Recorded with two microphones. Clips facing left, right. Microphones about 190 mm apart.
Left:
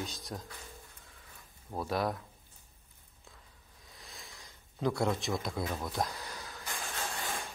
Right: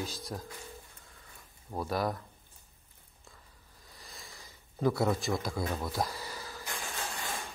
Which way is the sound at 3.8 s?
Centre (ahead or behind).